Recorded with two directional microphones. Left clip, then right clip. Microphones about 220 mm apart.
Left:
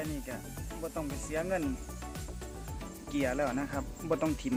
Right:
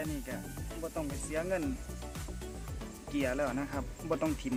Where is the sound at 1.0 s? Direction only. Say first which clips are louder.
Left 1 dB; 15° left (ahead or behind).